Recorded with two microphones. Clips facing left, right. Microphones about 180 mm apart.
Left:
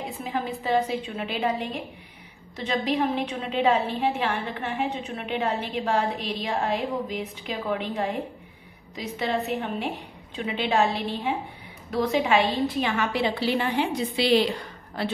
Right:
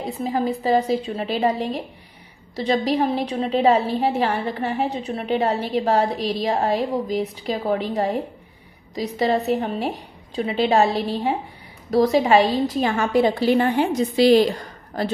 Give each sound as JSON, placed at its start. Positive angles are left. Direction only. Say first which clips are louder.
{"t": 0.2, "sound": "a woman's voice", "louder": "right 8 dB", "side_deg": -40}